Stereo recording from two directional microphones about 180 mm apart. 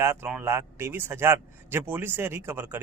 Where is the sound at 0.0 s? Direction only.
15° right (ahead or behind).